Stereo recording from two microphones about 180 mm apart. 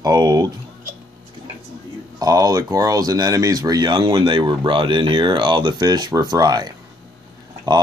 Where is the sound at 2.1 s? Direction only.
20° right (ahead or behind).